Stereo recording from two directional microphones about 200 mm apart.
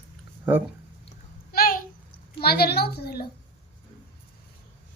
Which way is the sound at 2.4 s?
50° left (ahead or behind).